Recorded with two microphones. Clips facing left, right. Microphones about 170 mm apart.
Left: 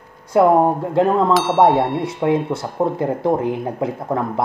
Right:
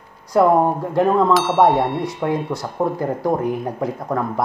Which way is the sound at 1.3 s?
Centre (ahead or behind).